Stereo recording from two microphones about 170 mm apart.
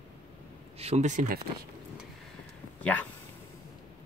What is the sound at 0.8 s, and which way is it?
Speech, 40° right (ahead or behind).